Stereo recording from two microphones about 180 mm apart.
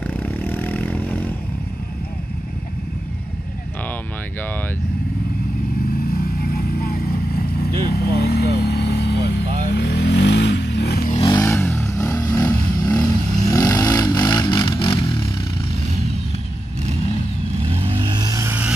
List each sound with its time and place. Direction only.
0.0 s vehicle: 10° left (ahead or behind)
6.1 s vehicle: 55° left (ahead or behind)
11.1 s vehicle: 20° left (ahead or behind)
17.6 s vehicle: 30° right (ahead or behind); by 18.7 s 10° right (ahead or behind)